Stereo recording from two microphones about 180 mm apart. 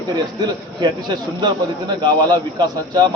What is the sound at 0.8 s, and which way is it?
A man's voice, 25° right (ahead or behind).